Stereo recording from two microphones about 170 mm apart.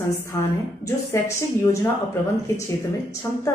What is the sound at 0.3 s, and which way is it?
Speech, 15° left (ahead or behind).